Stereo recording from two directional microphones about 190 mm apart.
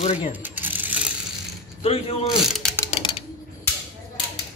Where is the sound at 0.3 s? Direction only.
10° right (ahead or behind).